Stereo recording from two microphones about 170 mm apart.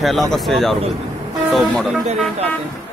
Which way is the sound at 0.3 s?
Centre (ahead or behind).